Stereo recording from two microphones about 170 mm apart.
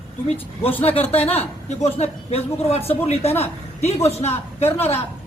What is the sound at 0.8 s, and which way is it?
Speech, 35° left (ahead or behind).